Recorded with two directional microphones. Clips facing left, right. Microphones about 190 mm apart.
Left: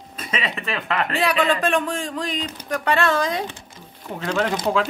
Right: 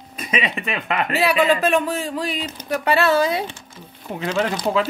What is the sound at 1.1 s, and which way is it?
Speech, 5° right (ahead or behind).